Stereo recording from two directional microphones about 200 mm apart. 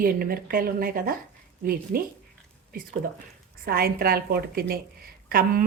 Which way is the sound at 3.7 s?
50° right (ahead or behind).